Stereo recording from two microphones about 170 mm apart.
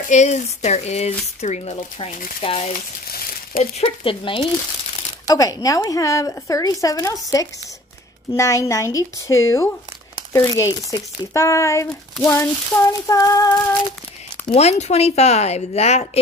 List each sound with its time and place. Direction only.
0.0 s speech: 45° left (ahead or behind)
3.1 s crumpling: 60° left (ahead or behind)
3.7 s a woman's voice: 35° left (ahead or behind)
14.5 s speech: 40° left (ahead or behind)